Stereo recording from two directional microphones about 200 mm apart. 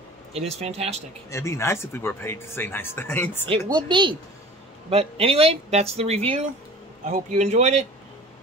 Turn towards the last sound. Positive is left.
turn(degrees=-35)  # may be behind; listen again after turning